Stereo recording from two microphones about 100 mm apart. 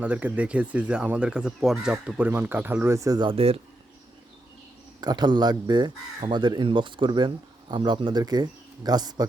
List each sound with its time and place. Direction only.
0.0 s speech: 15° right (ahead or behind); by 3.2 s 30° right (ahead or behind)
3.2 s speech: 65° right (ahead or behind)
4.9 s speech: 45° right (ahead or behind)